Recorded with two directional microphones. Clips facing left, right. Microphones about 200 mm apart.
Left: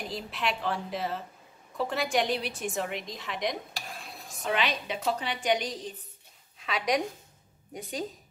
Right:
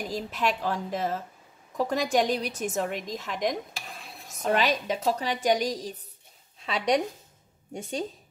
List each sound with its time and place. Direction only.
0.1 s a woman's voice: 45° right (ahead or behind)
3.8 s stir: centre (ahead or behind)
4.4 s a woman's voice: 40° right (ahead or behind)